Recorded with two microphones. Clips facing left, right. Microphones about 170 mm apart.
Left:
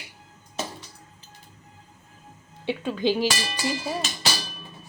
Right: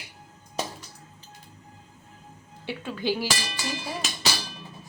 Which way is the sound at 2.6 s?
20° left (ahead or behind).